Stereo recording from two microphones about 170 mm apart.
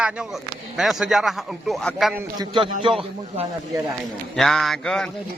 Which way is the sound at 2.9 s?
30° right (ahead or behind).